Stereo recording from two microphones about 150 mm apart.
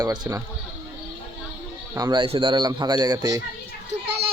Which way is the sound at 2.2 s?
35° right (ahead or behind).